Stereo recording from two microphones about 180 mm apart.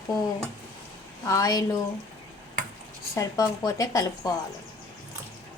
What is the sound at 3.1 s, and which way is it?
Speech, 20° left (ahead or behind).